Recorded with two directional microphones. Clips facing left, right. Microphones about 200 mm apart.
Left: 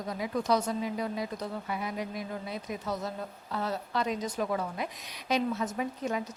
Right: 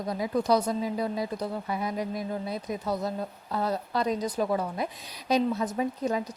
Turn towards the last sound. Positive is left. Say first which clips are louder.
# right 4 dB
turn(degrees=-35)  # may be behind; listen again after turning